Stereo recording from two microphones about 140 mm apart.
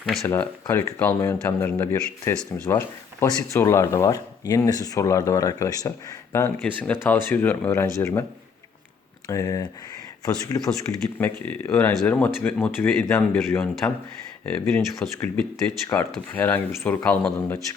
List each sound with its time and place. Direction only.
0.0 s speech: centre (ahead or behind)
0.3 s speech: 15° left (ahead or behind)
9.2 s speech: 25° left (ahead or behind)
11.2 s speech: 15° left (ahead or behind)